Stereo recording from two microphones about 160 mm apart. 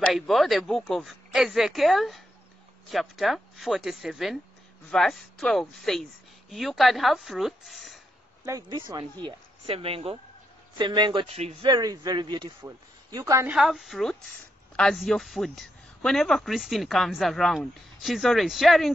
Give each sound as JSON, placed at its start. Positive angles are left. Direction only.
{"t": 0.0, "sound": "speech", "side_deg": 0}
{"t": 8.5, "sound": "speech", "side_deg": -25}
{"t": 9.2, "sound": "speech", "side_deg": -35}
{"t": 11.7, "sound": "speech", "side_deg": -25}
{"t": 12.6, "sound": "speech", "side_deg": -20}
{"t": 13.5, "sound": "speech", "side_deg": 0}